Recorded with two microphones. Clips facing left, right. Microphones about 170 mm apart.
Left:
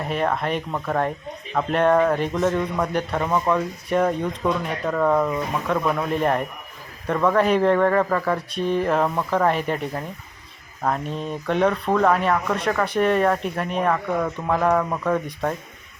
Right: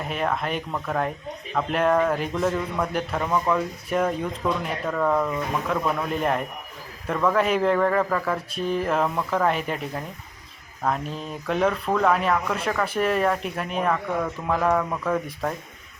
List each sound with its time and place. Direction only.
0.0 s speech: centre (ahead or behind)
3.2 s speech: 15° left (ahead or behind)
3.5 s speech: centre (ahead or behind)
5.6 s speech: centre (ahead or behind)